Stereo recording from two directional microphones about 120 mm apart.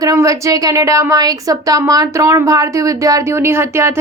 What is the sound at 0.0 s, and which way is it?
Speech, 30° right (ahead or behind).